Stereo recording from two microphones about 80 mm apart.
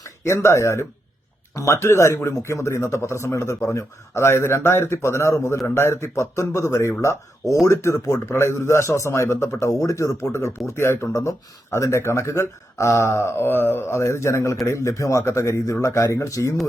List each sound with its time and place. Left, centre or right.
0.3 s a man's voice: left